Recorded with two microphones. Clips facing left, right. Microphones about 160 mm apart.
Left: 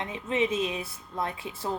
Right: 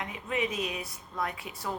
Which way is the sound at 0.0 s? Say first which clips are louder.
Left 4 dB; 25° left (ahead or behind).